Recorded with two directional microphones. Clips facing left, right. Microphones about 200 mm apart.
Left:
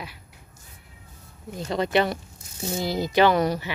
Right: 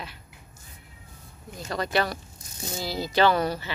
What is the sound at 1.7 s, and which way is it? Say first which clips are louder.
Speech: left 4 dB; 20° left (ahead or behind).